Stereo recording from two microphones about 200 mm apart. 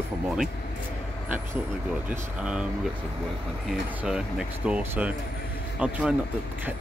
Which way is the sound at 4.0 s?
5° right (ahead or behind).